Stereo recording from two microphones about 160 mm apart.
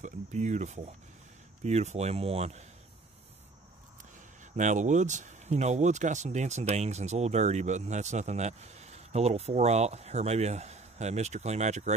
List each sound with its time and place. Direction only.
0.0 s speech: 50° right (ahead or behind)
4.6 s speech: 50° right (ahead or behind)